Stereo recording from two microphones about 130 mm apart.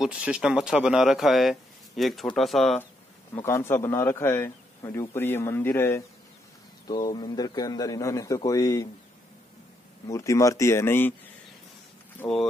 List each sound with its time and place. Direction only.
0.0 s speech: 5° right (ahead or behind)
3.4 s a man's voice: 20° left (ahead or behind)
6.9 s a man's voice: 35° left (ahead or behind)
10.0 s a man's voice: 25° left (ahead or behind)
12.2 s a man's voice: 5° left (ahead or behind)